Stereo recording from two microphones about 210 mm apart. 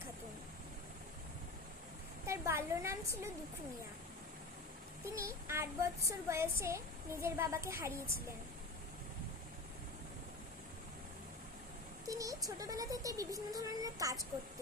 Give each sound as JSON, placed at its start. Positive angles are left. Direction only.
{"t": 2.2, "sound": "speech", "side_deg": -15}
{"t": 5.0, "sound": "speech", "side_deg": -15}
{"t": 12.0, "sound": "speech", "side_deg": -15}